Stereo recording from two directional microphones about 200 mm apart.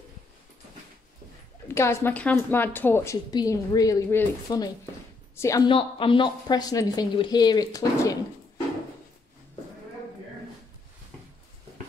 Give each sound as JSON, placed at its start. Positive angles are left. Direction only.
{"t": 1.7, "sound": "a woman's voice", "side_deg": 10}